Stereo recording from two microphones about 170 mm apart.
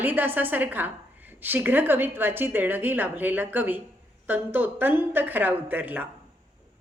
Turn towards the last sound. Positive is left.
turn(degrees=-10)  # may be behind; listen again after turning